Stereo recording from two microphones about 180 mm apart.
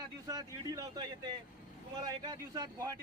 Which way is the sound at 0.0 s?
20° right (ahead or behind).